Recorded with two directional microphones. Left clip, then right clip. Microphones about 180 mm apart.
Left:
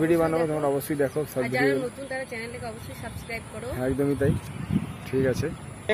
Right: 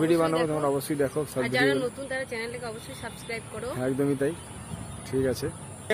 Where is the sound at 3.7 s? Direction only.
10° left (ahead or behind).